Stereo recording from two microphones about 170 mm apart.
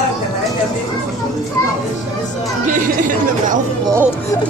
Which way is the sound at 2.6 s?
50° right (ahead or behind).